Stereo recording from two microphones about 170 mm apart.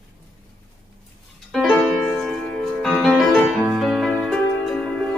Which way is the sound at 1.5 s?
Centre (ahead or behind).